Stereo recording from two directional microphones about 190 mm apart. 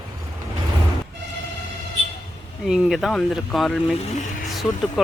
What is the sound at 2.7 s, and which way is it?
Speech, centre (ahead or behind).